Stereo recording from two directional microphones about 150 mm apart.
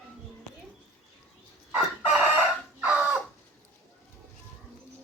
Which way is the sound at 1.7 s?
5° right (ahead or behind).